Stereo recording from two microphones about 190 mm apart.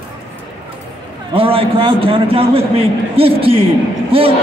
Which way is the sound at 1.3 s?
30° right (ahead or behind).